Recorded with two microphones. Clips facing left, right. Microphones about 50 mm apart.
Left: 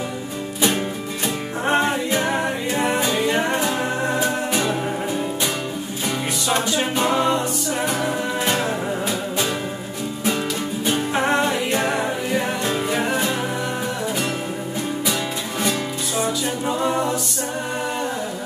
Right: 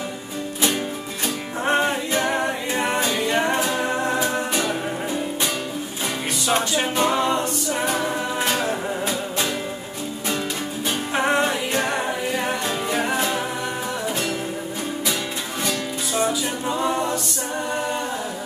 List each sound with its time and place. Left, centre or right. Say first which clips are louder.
1.7 s music: left 1 dB; centre
7.8 s music: even; centre
8.5 s music: left 2 dB; centre
10.9 s music: left 1 dB; centre
16.7 s a capella: left 1 dB; centre